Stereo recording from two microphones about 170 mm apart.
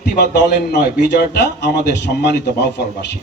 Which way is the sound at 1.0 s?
80° left.